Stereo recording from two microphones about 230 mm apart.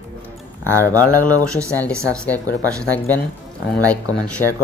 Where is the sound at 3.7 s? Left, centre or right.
Centre.